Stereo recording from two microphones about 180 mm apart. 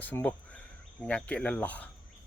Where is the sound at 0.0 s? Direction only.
10° left (ahead or behind).